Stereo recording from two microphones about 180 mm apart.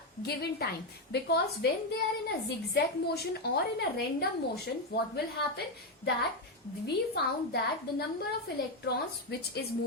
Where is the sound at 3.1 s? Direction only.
65° left (ahead or behind).